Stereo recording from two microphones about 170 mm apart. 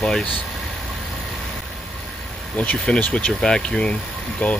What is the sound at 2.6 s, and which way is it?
Speech, 10° left (ahead or behind).